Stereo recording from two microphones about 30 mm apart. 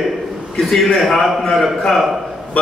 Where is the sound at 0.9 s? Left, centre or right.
Centre.